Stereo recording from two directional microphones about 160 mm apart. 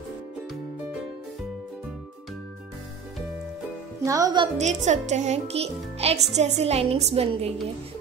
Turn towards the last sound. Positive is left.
turn(degrees=-40)  # may be behind; listen again after turning